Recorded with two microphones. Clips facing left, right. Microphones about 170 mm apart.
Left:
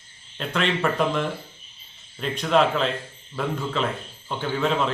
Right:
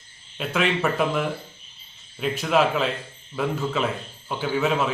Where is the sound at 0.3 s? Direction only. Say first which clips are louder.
Right 1 dB; 5° right (ahead or behind).